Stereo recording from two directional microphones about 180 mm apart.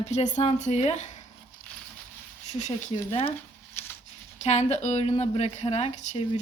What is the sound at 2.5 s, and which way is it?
Speech, 40° left (ahead or behind).